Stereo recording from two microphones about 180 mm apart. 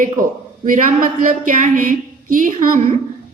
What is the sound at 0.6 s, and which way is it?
A woman's voice, 45° right (ahead or behind).